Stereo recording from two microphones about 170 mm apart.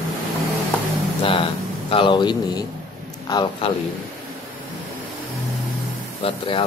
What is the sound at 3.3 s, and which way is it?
Speech, 25° left (ahead or behind).